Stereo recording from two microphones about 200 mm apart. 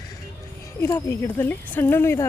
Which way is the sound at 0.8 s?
15° left (ahead or behind).